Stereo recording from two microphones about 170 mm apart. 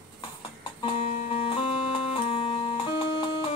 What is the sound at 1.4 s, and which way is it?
Music, 30° left (ahead or behind).